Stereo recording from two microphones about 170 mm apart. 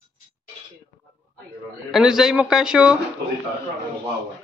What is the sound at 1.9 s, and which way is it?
Speech, 5° right (ahead or behind).